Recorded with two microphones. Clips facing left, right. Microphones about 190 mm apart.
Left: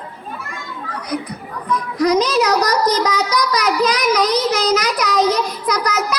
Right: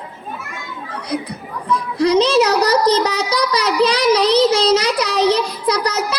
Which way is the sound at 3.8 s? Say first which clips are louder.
Right 5 dB; 30° right (ahead or behind).